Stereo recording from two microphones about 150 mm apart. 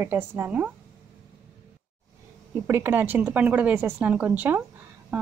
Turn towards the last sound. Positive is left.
turn(degrees=-5)  # may be behind; listen again after turning